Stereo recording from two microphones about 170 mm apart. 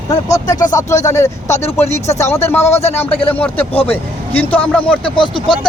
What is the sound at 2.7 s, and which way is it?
Speech, 40° left (ahead or behind).